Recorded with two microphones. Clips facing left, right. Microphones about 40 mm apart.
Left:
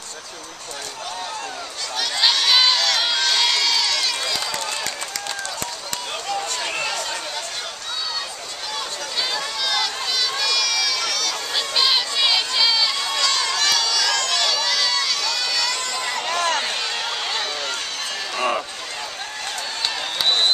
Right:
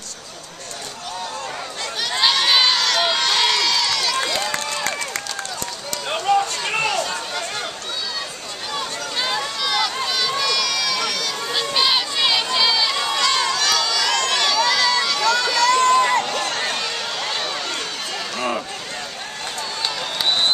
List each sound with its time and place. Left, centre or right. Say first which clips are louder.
2.2 s crowd: right 1 dB; centre
4.4 s run: right 3 dB; right
6.1 s run: right 9 dB; right
6.7 s a sound: right 6 dB; centre
8.7 s a sound: right 2 dB; centre
9.6 s run: right 1 dB; centre
13.5 s run: right 1 dB; centre
13.8 s a sound: right 1 dB; centre
14.4 s crowd: right 4 dB; centre
15.2 s run: right 7 dB; centre
15.9 s crowd: right 10 dB; right
16.5 s run: even; centre
18.3 s a sound: left 2 dB; centre